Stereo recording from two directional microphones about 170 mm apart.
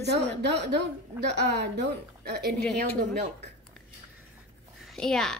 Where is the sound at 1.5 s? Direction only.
75° right (ahead or behind).